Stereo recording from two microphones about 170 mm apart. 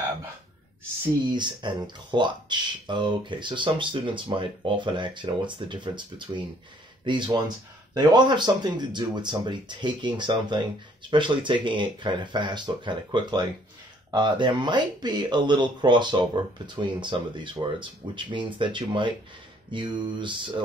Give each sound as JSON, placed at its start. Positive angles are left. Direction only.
{"t": 1.3, "sound": "speech", "side_deg": -25}